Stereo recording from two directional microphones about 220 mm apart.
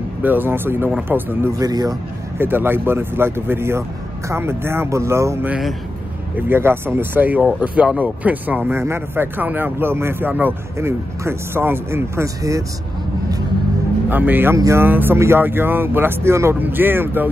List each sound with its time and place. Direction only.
0.2 s speech: 10° right (ahead or behind)
14.0 s speech: 10° right (ahead or behind)